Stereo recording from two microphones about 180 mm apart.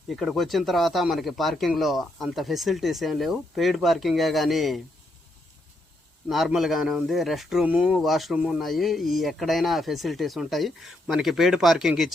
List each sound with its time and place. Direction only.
0.1 s speech: centre (ahead or behind)
6.2 s speech: centre (ahead or behind)